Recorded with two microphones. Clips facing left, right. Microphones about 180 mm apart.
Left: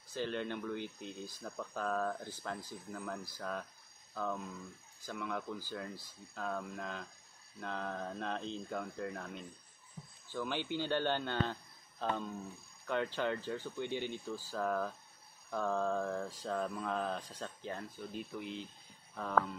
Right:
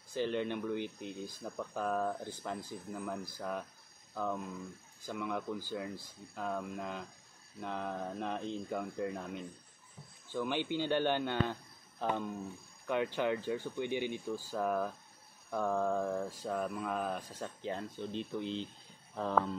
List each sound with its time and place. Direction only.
0.1 s mantra: 15° right (ahead or behind)
4.1 s speech: 15° right (ahead or behind)
5.0 s mantra: 15° right (ahead or behind)